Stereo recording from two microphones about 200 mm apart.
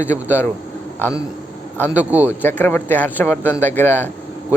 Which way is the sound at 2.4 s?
10° left (ahead or behind).